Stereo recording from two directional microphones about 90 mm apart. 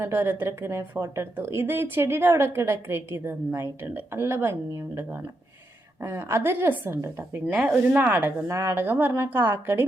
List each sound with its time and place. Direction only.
0.0 s a woman's voice: 25° right (ahead or behind)